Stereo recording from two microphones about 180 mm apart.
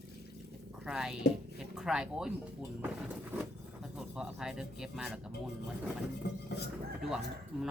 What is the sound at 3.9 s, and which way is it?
Speech, 5° right (ahead or behind).